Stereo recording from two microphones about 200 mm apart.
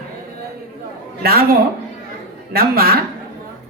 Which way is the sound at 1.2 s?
50° right (ahead or behind).